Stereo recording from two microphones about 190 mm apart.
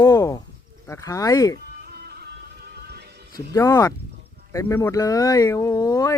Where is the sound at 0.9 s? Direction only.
15° left (ahead or behind).